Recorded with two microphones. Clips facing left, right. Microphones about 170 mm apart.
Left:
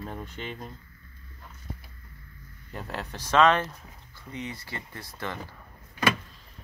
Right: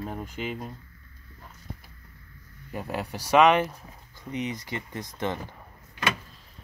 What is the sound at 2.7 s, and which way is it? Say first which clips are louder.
Speech: right 4 dB; 10° right (ahead or behind).